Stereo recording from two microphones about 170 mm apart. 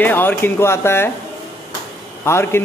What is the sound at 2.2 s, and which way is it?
Speech, 15° left (ahead or behind).